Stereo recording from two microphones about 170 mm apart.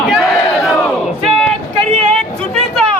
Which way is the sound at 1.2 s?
Centre (ahead or behind).